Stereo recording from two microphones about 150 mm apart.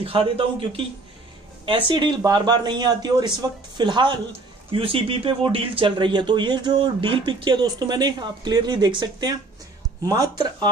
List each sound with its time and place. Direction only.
0.0 s speech: 40° right (ahead or behind)